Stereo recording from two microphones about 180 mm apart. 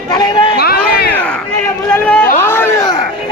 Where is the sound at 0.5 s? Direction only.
60° left (ahead or behind).